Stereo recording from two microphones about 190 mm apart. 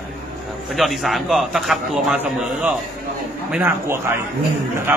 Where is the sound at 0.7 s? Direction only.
Centre (ahead or behind).